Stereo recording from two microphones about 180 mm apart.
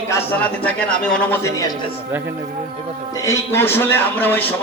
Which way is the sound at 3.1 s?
15° left (ahead or behind).